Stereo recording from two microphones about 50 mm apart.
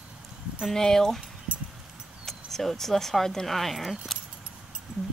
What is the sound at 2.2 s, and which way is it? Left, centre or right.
Speech, centre.